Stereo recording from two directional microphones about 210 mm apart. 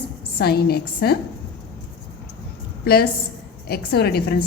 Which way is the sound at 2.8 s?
50° left (ahead or behind).